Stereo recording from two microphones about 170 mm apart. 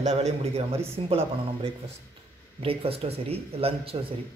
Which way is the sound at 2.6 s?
35° right (ahead or behind).